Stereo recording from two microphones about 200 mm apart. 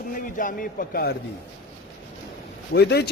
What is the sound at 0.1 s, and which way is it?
A man's voice, 45° left (ahead or behind).